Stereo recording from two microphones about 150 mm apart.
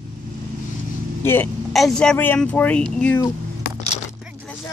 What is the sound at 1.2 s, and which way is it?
Speech, 15° left (ahead or behind).